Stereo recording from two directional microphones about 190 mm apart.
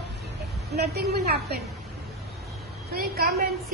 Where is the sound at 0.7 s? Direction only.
60° right (ahead or behind).